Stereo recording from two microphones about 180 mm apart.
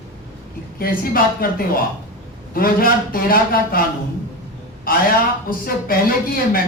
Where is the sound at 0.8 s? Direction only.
55° left (ahead or behind).